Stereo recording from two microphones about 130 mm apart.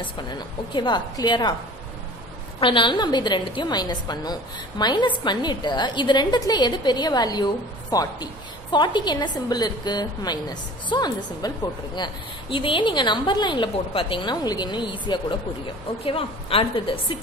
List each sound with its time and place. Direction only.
0.4 s a woman's voice: 35° left (ahead or behind)
2.6 s a woman's voice: 40° left (ahead or behind)